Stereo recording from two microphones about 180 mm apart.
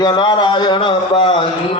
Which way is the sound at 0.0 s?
25° left (ahead or behind).